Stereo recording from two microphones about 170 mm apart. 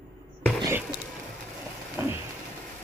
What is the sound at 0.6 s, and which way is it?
Insect, 15° right (ahead or behind).